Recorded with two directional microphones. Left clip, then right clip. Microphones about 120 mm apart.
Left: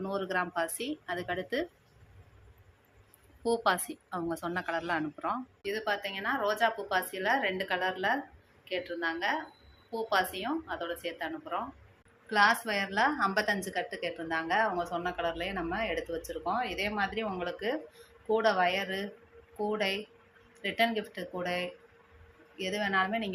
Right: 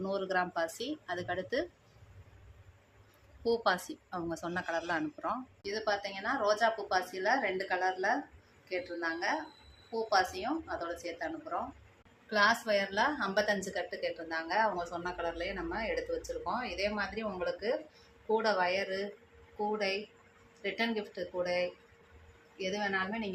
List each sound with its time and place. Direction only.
0.0 s a woman's voice: 25° left (ahead or behind)
3.4 s a woman's voice: 30° left (ahead or behind)
12.3 s a woman's voice: 45° left (ahead or behind)